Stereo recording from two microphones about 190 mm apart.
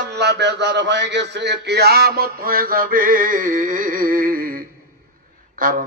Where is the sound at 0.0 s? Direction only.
60° right (ahead or behind).